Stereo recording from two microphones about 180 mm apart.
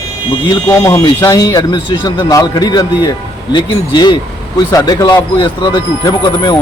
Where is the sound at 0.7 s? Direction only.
15° left (ahead or behind).